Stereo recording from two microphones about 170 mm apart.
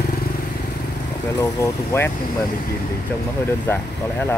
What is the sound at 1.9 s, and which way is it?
Speech, 15° left (ahead or behind).